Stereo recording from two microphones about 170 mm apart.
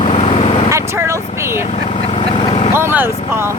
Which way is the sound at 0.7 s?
15° right (ahead or behind).